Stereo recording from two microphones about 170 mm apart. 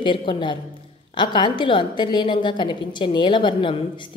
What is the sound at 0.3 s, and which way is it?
A woman's voice, 30° left (ahead or behind).